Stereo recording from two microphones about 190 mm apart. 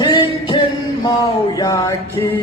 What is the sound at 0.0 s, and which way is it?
Music, 25° left (ahead or behind).